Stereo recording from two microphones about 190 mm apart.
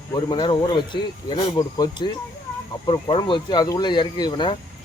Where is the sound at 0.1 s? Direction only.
20° left (ahead or behind).